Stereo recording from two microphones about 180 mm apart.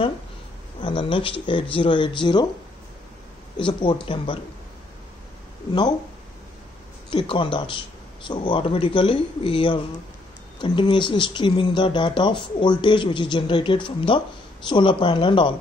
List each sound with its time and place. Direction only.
0.8 s speech: 30° left (ahead or behind)
3.5 s speech: 30° left (ahead or behind)
7.1 s speech: 30° left (ahead or behind)